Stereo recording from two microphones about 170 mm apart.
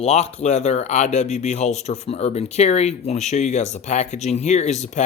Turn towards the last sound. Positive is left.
turn(degrees=45)  # may be behind; listen again after turning